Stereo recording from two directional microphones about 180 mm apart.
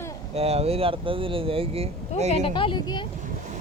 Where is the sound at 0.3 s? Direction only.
35° right (ahead or behind).